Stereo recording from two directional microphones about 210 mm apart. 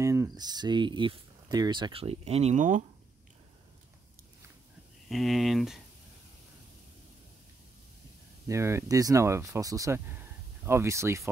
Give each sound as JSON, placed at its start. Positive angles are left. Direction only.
{"t": 0.0, "sound": "speech", "side_deg": -15}
{"t": 5.1, "sound": "speech", "side_deg": 0}
{"t": 8.5, "sound": "speech", "side_deg": -15}